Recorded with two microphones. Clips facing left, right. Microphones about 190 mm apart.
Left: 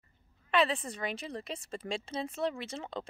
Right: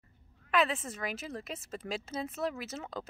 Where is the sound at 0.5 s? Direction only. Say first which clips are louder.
Left 1 dB; centre (ahead or behind).